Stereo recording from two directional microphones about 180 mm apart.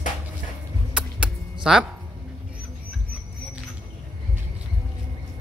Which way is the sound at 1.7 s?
5° right (ahead or behind).